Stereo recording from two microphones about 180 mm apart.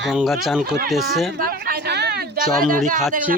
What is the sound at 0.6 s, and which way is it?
Speech, 60° right (ahead or behind).